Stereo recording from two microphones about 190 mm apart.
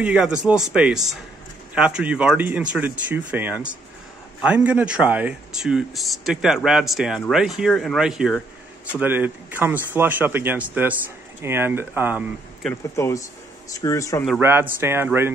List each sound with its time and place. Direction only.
0.0 s speech: 5° right (ahead or behind)
12.9 s speech: 15° left (ahead or behind)
14.4 s speech: 10° right (ahead or behind)